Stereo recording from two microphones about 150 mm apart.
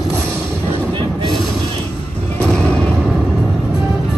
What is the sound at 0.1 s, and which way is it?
Music, 10° left (ahead or behind).